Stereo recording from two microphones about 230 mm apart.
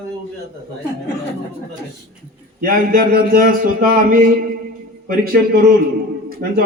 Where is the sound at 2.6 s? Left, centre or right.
Right.